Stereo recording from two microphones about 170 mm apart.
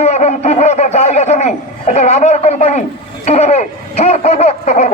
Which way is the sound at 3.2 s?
40° left (ahead or behind).